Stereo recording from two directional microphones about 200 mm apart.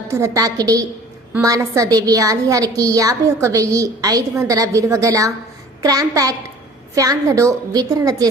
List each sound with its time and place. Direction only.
0.1 s a woman's voice: 15° right (ahead or behind)